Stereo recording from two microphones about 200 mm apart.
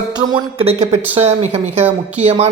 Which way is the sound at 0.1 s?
20° right (ahead or behind).